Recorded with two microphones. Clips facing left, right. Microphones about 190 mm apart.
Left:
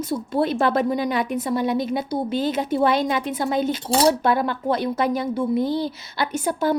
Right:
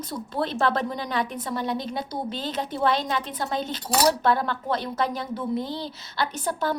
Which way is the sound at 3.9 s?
25° left (ahead or behind).